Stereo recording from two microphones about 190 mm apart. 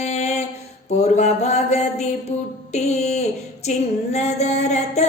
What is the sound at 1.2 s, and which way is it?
Mantra, 35° left (ahead or behind).